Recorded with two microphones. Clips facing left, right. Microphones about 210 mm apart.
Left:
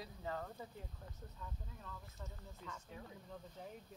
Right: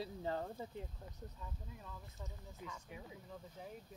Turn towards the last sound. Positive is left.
turn(degrees=-10)  # may be behind; listen again after turning